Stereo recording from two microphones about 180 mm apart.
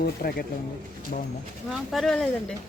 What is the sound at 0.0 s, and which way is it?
Speech, 55° left (ahead or behind).